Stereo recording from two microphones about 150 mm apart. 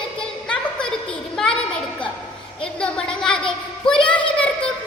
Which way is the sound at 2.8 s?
5° left (ahead or behind).